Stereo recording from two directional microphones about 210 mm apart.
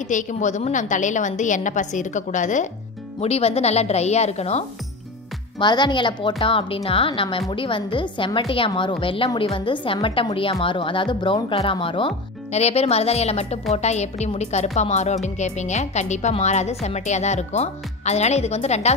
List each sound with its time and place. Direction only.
0.1 s a woman's voice: 35° left (ahead or behind)